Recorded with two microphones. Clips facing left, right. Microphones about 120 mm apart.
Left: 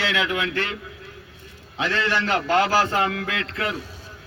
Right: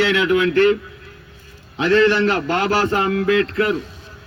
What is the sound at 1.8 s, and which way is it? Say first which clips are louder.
A man's voice: right 9 dB; 35° right (ahead or behind).